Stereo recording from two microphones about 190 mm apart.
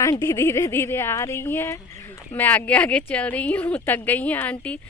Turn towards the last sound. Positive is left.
turn(degrees=5)  # may be behind; listen again after turning